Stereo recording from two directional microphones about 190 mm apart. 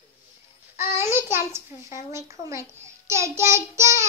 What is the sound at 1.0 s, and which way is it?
A child's voice, 15° right (ahead or behind).